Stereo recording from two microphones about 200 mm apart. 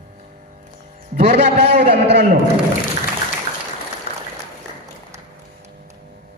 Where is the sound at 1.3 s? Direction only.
35° right (ahead or behind).